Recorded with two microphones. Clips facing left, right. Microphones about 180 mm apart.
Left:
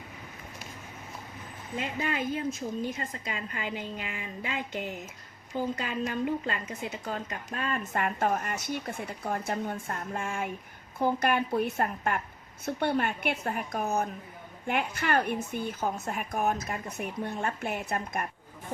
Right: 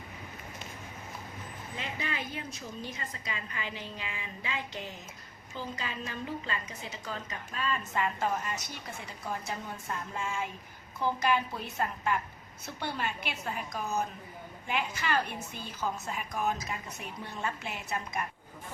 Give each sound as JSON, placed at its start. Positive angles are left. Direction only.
{"t": 1.8, "sound": "a woman's voice", "side_deg": 50}